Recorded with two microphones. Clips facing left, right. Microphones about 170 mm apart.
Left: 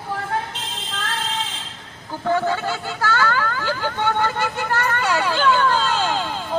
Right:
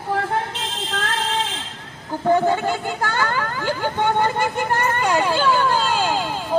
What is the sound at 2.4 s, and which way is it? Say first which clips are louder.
Vehicle: right 3 dB; 15° right (ahead or behind).